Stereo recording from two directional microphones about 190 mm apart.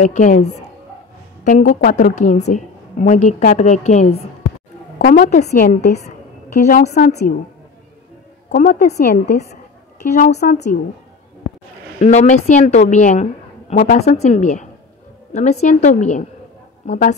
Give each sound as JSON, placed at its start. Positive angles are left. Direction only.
{"t": 0.0, "sound": "a woman's voice", "side_deg": 40}
{"t": 4.9, "sound": "a woman's voice", "side_deg": 45}
{"t": 8.5, "sound": "a woman's voice", "side_deg": 50}
{"t": 12.0, "sound": "a woman's voice", "side_deg": 40}